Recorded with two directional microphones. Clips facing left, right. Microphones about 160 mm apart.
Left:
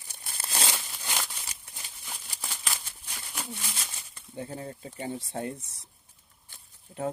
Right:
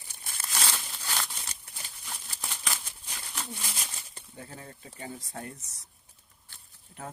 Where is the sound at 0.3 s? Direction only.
30° left (ahead or behind).